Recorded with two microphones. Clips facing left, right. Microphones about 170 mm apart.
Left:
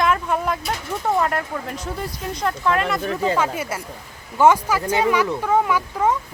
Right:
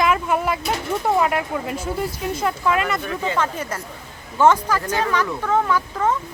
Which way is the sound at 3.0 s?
35° left (ahead or behind).